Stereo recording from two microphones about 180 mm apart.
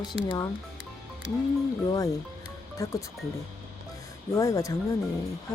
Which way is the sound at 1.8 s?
20° left (ahead or behind).